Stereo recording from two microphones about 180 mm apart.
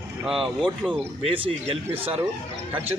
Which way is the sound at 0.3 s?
5° right (ahead or behind).